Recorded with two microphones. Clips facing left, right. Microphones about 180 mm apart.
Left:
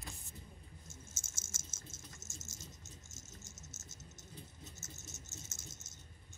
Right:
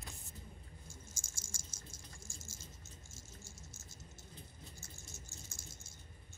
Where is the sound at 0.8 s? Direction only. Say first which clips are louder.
Even; 25° left (ahead or behind).